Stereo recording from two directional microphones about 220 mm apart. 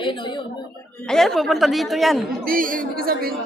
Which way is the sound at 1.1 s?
Centre (ahead or behind).